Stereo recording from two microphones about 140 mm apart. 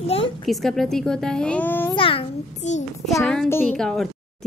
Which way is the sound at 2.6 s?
55° left (ahead or behind).